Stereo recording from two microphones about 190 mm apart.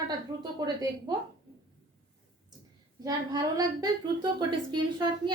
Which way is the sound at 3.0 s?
20° right (ahead or behind).